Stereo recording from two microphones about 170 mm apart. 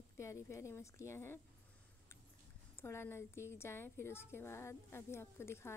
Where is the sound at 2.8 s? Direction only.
15° left (ahead or behind).